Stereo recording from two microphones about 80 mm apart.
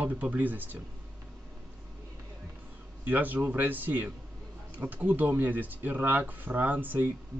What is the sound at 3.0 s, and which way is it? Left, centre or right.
Speech, right.